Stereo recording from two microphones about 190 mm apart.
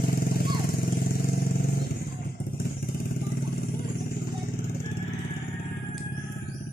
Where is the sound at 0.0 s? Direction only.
55° left (ahead or behind).